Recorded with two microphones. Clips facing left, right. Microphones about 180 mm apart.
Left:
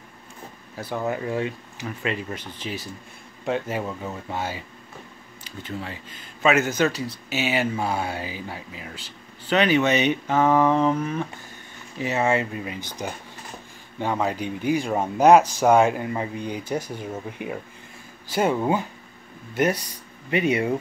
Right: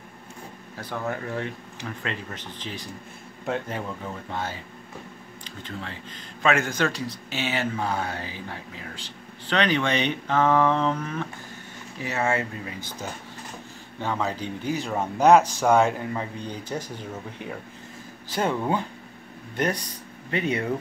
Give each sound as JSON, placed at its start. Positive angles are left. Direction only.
{"t": 1.0, "sound": "a man's voice", "side_deg": 15}